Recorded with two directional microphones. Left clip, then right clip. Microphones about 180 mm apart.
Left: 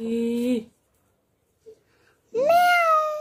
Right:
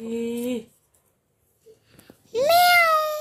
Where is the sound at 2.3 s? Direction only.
5° left (ahead or behind).